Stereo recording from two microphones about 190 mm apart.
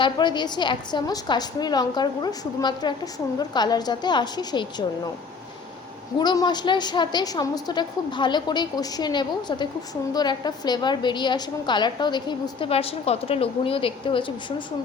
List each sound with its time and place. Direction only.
0.0 s a woman's voice: 25° left (ahead or behind)
6.1 s a woman's voice: 20° left (ahead or behind)